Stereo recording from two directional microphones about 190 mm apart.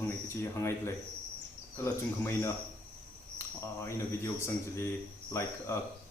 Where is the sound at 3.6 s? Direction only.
15° left (ahead or behind).